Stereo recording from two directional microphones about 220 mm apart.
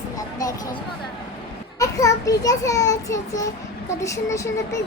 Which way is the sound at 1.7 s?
15° left (ahead or behind).